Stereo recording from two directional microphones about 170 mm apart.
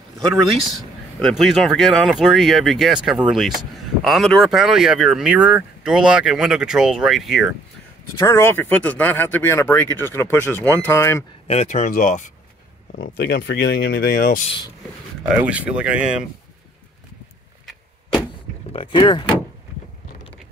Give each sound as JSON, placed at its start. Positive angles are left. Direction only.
{"t": 0.7, "sound": "speech", "side_deg": 0}
{"t": 8.2, "sound": "speech", "side_deg": 15}
{"t": 11.4, "sound": "speech", "side_deg": 40}
{"t": 12.9, "sound": "speech", "side_deg": 75}
{"t": 15.4, "sound": "speech", "side_deg": -10}
{"t": 18.7, "sound": "speech", "side_deg": 30}